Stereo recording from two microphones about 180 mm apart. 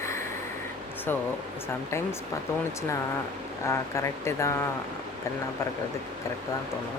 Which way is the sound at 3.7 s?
15° left (ahead or behind).